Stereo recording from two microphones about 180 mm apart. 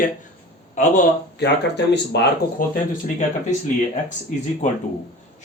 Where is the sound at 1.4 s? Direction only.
70° left (ahead or behind).